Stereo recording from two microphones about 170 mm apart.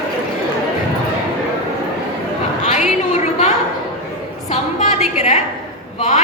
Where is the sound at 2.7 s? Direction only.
40° left (ahead or behind).